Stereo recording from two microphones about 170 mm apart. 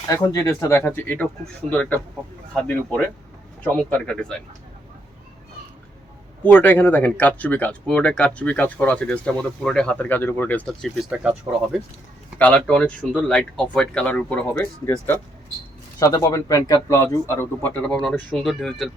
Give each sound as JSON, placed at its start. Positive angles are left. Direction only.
{"t": 0.1, "sound": "speech", "side_deg": 20}
{"t": 6.4, "sound": "speech", "side_deg": 10}
{"t": 12.4, "sound": "speech", "side_deg": 5}